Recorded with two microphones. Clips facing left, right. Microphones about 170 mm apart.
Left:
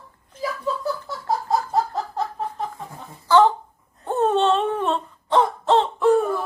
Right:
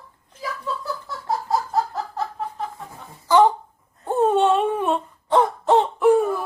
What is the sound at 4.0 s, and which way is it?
Wail, 10° right (ahead or behind).